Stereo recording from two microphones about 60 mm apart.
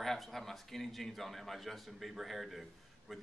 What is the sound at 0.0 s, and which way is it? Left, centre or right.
Speech, centre.